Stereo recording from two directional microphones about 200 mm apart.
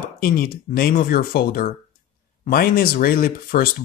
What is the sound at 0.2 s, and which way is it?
Speech, 45° left (ahead or behind).